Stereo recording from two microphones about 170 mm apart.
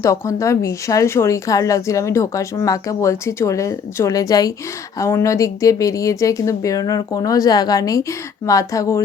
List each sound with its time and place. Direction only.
0.0 s a woman's voice: 15° left (ahead or behind)